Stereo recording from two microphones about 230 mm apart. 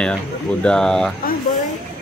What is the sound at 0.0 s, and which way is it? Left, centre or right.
Speech, centre.